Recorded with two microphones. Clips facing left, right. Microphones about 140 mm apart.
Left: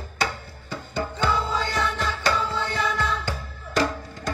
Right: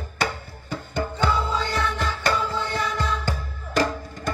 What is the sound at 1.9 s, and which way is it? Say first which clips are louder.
Music: even; 50° right (ahead or behind).